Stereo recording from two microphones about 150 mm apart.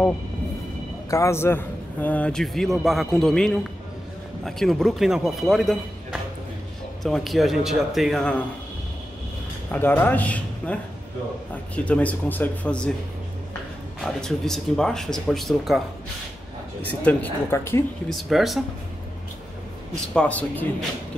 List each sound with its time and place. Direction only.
1.1 s a man's voice: 20° left (ahead or behind); by 5.8 s centre (ahead or behind)
7.0 s a man's voice: centre (ahead or behind)
9.7 s speech: 15° left (ahead or behind)
14.0 s a man's voice: 5° left (ahead or behind)
17.0 s speech: 15° left (ahead or behind)
18.1 s a man's voice: centre (ahead or behind)
20.2 s speech: 10° left (ahead or behind)